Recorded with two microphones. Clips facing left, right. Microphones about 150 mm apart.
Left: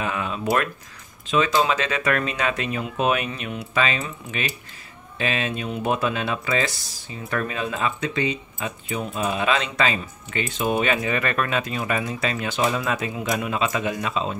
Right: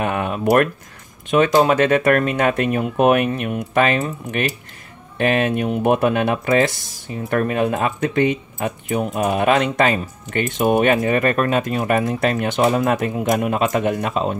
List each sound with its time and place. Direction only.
0.0 s speech: 55° right (ahead or behind)